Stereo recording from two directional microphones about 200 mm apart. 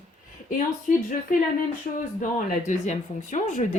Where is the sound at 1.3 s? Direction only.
40° left (ahead or behind).